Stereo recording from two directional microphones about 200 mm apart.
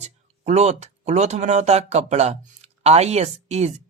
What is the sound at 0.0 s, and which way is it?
Speech, 35° right (ahead or behind).